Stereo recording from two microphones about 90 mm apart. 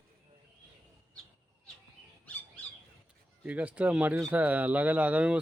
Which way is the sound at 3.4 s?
15° right (ahead or behind).